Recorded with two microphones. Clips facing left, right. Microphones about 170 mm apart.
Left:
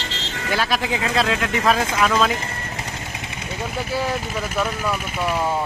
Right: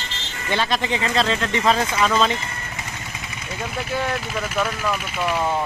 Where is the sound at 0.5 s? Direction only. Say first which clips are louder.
Even; 5° left (ahead or behind).